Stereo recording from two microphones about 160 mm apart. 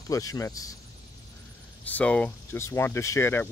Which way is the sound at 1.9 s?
10° left (ahead or behind).